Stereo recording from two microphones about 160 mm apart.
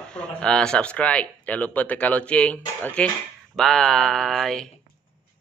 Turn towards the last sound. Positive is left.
turn(degrees=0)  # may be behind; listen again after turning